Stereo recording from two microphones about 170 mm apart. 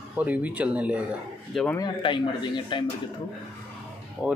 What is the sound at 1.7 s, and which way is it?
Speech, 25° left (ahead or behind).